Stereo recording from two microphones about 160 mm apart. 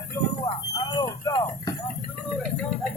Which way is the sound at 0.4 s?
20° left (ahead or behind).